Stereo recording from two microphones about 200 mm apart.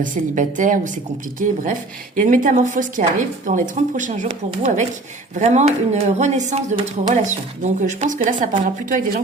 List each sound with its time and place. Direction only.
0.0 s speech: 40° right (ahead or behind)
2.1 s speech: 40° right (ahead or behind)